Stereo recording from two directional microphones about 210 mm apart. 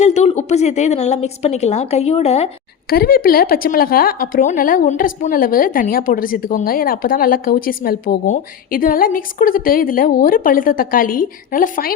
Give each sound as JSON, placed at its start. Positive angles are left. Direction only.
{"t": 0.0, "sound": "a woman's voice", "side_deg": 35}
{"t": 2.9, "sound": "a woman's voice", "side_deg": 45}